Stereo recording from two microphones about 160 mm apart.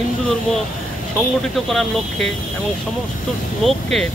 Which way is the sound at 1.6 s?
Centre (ahead or behind).